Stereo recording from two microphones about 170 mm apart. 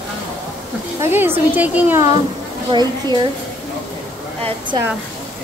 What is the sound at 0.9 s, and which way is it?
Speech, 15° right (ahead or behind).